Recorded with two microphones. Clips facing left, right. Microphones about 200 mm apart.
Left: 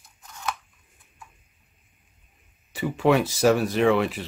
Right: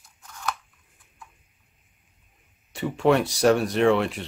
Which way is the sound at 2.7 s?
Centre (ahead or behind).